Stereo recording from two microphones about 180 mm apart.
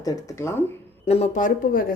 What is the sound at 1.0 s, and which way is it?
Speech, 35° left (ahead or behind).